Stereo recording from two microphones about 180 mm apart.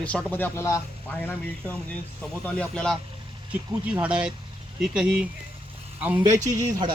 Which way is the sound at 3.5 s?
10° right (ahead or behind).